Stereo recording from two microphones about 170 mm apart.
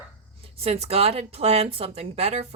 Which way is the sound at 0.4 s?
35° right (ahead or behind).